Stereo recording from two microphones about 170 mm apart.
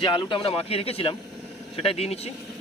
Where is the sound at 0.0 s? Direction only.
30° left (ahead or behind).